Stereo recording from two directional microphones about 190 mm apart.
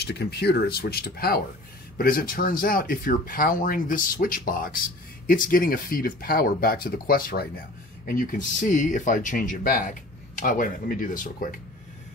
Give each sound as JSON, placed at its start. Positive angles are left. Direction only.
{"t": 0.0, "sound": "speech", "side_deg": 60}